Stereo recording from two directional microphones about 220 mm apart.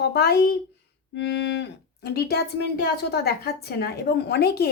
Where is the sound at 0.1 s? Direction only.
45° left (ahead or behind).